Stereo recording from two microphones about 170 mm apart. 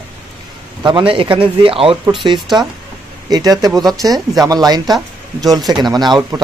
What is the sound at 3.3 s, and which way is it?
A man's voice, 20° right (ahead or behind).